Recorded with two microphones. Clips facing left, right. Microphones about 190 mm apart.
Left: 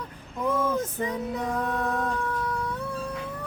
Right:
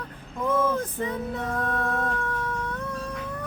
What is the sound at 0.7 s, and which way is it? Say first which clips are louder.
Female singing: even; 15° left (ahead or behind).